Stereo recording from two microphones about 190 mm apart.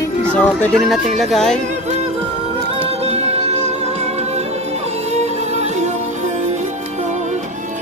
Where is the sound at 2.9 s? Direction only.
35° right (ahead or behind).